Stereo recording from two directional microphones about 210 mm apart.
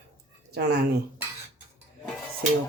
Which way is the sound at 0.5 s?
50° right (ahead or behind).